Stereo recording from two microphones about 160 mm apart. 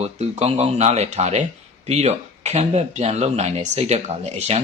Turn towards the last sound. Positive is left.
turn(degrees=-40)  # may be behind; listen again after turning